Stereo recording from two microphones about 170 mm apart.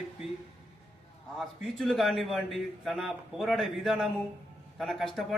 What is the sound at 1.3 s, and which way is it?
A man's voice, centre (ahead or behind).